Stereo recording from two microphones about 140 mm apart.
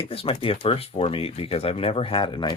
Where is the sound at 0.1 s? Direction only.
45° left (ahead or behind).